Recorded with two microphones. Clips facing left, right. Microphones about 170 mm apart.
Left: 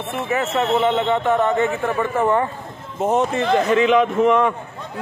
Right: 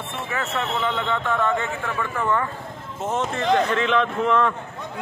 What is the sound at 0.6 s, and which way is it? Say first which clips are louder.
A man's voice: left 8 dB; 20° left (ahead or behind).